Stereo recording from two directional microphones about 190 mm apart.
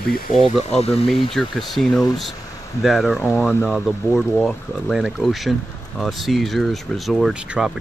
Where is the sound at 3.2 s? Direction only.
10° left (ahead or behind).